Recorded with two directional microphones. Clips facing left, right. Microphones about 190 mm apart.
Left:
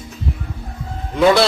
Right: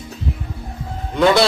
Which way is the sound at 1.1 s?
Centre (ahead or behind).